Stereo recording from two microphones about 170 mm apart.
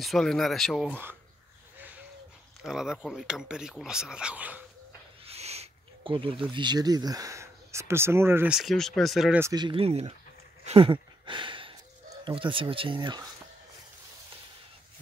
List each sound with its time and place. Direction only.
0.0 s speech: centre (ahead or behind)
2.6 s speech: 5° right (ahead or behind)
5.2 s speech: 35° right (ahead or behind); by 8.5 s 15° right (ahead or behind)
8.5 s speech: centre (ahead or behind)
9.4 s speech: 25° right (ahead or behind)
10.6 s a sound: 35° right (ahead or behind)
12.3 s speech: 30° right (ahead or behind)